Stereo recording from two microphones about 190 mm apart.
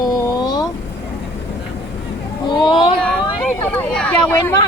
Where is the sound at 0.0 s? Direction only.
20° left (ahead or behind).